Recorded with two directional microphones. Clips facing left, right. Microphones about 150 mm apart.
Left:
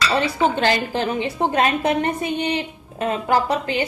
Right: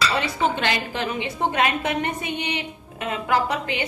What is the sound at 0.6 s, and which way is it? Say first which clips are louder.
A woman's voice: left 5 dB; 35° left (ahead or behind).